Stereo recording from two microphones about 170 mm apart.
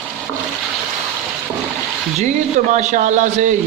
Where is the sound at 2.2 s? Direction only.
40° right (ahead or behind).